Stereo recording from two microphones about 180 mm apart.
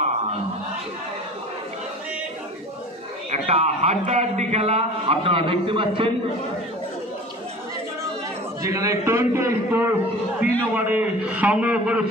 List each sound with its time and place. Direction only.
3.3 s a man's voice: 35° right (ahead or behind)
8.6 s a man's voice: 15° right (ahead or behind)